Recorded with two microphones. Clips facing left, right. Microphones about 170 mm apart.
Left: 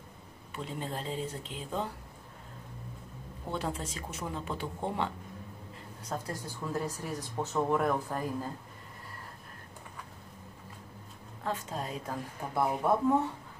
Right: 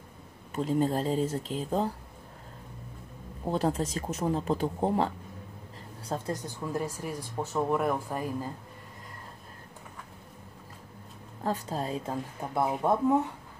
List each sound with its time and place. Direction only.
0.5 s speech: 40° right (ahead or behind)
3.4 s speech: 40° right (ahead or behind)
6.0 s speech: 25° right (ahead or behind); by 8.5 s 10° right (ahead or behind)
11.4 s speech: 35° right (ahead or behind)